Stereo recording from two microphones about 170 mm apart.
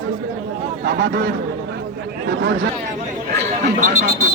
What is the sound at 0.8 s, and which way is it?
Speech, 70° right (ahead or behind).